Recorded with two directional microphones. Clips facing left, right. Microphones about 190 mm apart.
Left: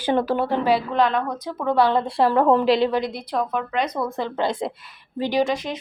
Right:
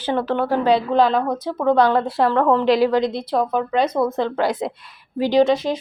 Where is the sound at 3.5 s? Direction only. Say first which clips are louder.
Right 5 dB; 30° right (ahead or behind).